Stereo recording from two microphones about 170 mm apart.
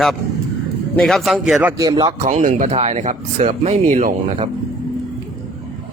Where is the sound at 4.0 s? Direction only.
50° right (ahead or behind).